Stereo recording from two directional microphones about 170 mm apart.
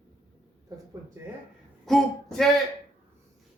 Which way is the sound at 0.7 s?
20° right (ahead or behind).